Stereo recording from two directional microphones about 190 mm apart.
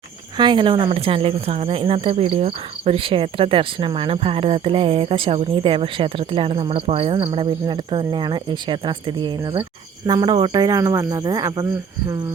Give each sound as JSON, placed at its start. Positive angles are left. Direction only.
{"t": 0.3, "sound": "speech", "side_deg": -25}